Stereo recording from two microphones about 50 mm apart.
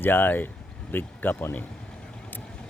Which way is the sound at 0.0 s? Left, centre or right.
Left.